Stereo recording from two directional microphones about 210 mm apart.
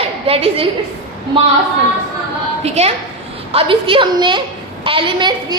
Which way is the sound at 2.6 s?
30° right (ahead or behind).